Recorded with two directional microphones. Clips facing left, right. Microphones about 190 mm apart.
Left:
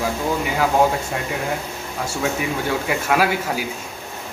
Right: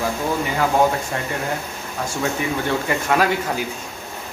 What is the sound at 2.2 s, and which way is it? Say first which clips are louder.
Speech: even; 5° left (ahead or behind).